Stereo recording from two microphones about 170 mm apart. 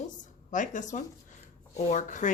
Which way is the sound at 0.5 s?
50° left (ahead or behind).